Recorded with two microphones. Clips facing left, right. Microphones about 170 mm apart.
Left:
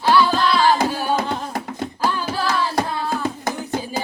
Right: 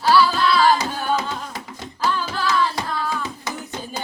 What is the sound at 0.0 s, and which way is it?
Music, 5° right (ahead or behind).